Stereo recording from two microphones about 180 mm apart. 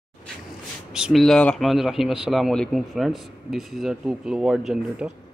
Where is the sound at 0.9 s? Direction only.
Centre (ahead or behind).